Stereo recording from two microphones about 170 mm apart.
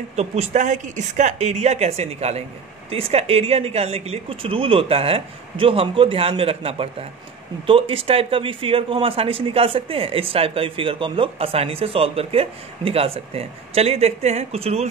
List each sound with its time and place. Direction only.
0.1 s speech: 40° right (ahead or behind)